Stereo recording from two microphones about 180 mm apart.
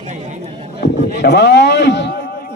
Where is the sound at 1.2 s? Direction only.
70° left (ahead or behind).